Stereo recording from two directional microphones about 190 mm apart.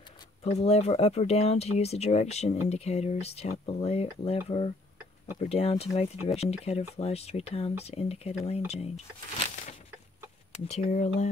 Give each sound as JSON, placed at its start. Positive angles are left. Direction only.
{"t": 0.4, "sound": "speech", "side_deg": 30}
{"t": 10.7, "sound": "speech", "side_deg": 35}